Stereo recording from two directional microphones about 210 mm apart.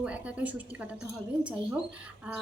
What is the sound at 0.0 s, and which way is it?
Speech, 5° right (ahead or behind).